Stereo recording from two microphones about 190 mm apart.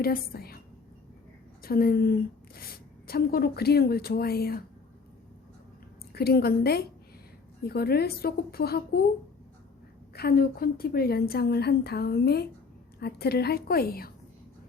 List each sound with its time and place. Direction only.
0.0 s speech: 50° left (ahead or behind)
1.6 s speech: 50° left (ahead or behind)
6.1 s a woman's voice: 55° left (ahead or behind)
10.1 s a woman's voice: 55° left (ahead or behind)